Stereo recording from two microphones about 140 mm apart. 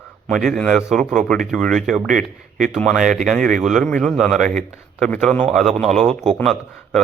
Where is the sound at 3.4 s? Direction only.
70° right (ahead or behind).